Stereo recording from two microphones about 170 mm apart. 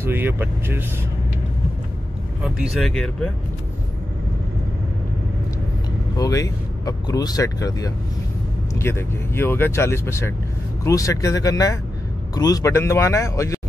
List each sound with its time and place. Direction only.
0.0 s speech: 10° right (ahead or behind)
2.4 s speech: centre (ahead or behind)
6.1 s speech: 20° left (ahead or behind)